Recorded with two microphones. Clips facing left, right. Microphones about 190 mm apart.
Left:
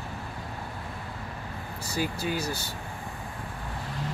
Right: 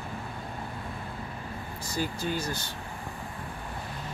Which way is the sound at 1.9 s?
10° left (ahead or behind).